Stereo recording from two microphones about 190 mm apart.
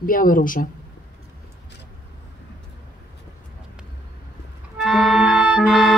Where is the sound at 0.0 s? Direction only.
45° left (ahead or behind).